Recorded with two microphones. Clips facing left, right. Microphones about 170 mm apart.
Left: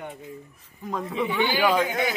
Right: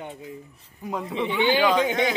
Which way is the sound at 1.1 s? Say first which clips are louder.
Even; 25° right (ahead or behind).